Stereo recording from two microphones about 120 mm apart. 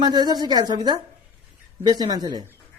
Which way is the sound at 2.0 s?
35° right (ahead or behind).